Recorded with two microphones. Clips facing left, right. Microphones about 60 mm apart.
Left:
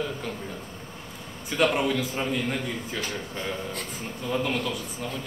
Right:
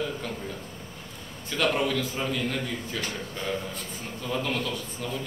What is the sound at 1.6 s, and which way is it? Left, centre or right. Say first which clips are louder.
Speech: left 2 dB; centre.